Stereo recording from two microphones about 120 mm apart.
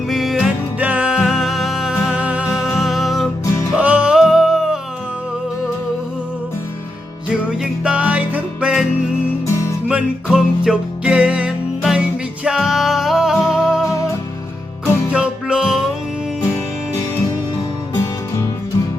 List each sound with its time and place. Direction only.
0.1 s music: centre (ahead or behind)
3.4 s music: 25° left (ahead or behind)
3.8 s music: 10° right (ahead or behind)
7.6 s music: 10° right (ahead or behind)
9.9 s music: 5° right (ahead or behind)
15.1 s music: 10° right (ahead or behind)